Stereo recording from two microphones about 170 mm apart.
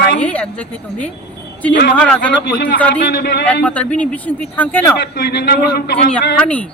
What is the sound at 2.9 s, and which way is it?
Speech, 80° left.